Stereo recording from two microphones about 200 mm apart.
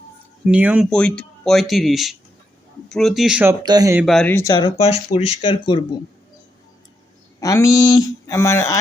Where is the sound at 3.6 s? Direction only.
20° right (ahead or behind).